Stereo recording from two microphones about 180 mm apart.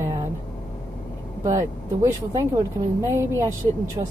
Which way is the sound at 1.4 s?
15° right (ahead or behind).